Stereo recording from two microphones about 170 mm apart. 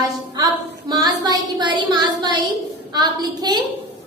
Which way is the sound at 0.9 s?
25° right (ahead or behind).